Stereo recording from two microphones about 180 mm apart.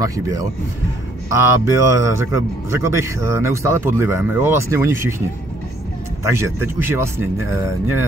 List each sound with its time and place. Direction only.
0.0 s speech: 20° right (ahead or behind)
6.2 s speech: 15° right (ahead or behind)